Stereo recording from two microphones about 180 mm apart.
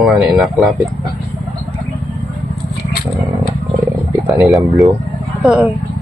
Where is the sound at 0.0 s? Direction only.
Centre (ahead or behind).